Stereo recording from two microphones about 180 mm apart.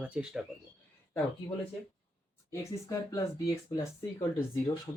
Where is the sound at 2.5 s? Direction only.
15° left (ahead or behind).